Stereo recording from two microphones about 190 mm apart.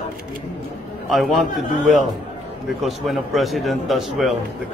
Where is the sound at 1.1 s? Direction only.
Centre (ahead or behind).